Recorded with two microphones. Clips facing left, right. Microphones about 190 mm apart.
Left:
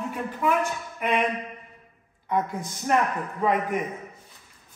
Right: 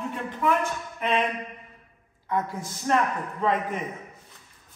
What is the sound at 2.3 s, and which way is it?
Speech, 20° left (ahead or behind).